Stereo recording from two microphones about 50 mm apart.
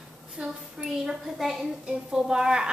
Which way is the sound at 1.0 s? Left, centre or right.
Centre.